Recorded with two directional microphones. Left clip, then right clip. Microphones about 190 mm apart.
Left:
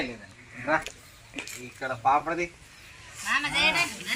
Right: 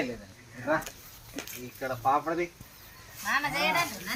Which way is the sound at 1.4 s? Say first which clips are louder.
Left 3 dB; 45° right (ahead or behind).